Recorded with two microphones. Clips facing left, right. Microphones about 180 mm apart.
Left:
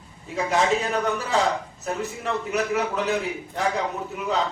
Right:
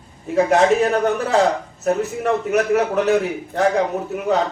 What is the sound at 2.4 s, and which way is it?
A man's voice, 55° right (ahead or behind).